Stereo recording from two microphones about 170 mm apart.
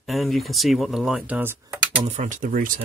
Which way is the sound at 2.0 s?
45° right (ahead or behind).